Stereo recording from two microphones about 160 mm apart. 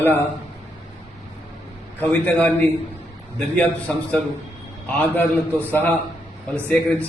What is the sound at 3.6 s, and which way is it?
A man's voice, 10° left (ahead or behind).